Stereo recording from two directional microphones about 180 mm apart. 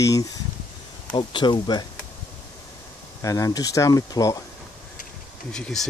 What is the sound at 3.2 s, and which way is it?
Speech, 20° left (ahead or behind).